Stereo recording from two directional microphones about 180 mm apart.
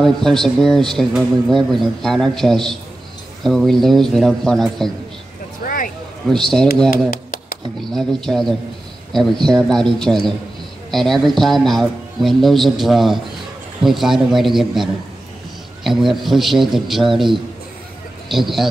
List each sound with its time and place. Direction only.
0.0 s speech: centre (ahead or behind)
6.3 s speech: centre (ahead or behind)
6.9 s a sound: 55° left (ahead or behind)
7.9 s speech: centre (ahead or behind)